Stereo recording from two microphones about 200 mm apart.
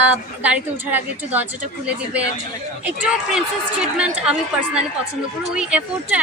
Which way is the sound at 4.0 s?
5° right (ahead or behind).